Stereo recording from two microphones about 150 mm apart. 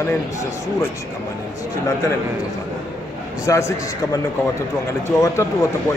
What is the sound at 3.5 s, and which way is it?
Speech, 20° left (ahead or behind).